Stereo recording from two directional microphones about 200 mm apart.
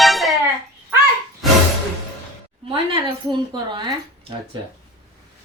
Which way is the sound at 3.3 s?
20° right (ahead or behind).